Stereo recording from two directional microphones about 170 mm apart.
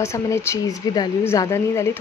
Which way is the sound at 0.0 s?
15° left (ahead or behind).